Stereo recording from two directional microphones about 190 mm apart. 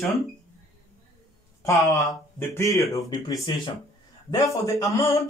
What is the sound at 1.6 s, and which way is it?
Speech, 15° left (ahead or behind).